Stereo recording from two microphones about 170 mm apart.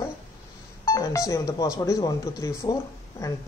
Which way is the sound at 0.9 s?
20° left (ahead or behind).